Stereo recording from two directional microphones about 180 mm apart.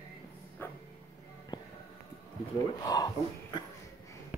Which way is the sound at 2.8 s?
20° left (ahead or behind).